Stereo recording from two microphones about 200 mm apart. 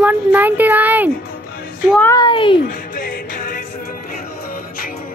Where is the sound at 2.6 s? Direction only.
45° left (ahead or behind).